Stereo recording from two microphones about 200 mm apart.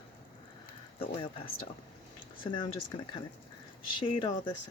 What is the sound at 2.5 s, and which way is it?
Speech, 20° left (ahead or behind).